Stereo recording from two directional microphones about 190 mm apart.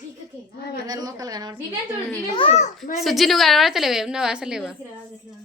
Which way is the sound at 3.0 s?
Centre (ahead or behind).